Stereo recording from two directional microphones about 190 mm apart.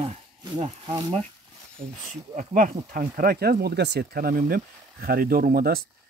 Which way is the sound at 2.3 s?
45° right (ahead or behind).